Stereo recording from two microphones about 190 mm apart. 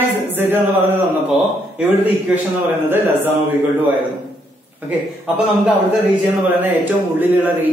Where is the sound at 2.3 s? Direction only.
5° right (ahead or behind).